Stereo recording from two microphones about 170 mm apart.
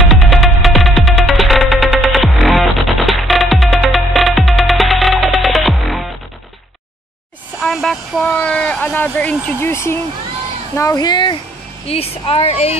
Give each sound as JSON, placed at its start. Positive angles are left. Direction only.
{"t": 0.1, "sound": "music", "side_deg": 0}
{"t": 7.6, "sound": "speech", "side_deg": 0}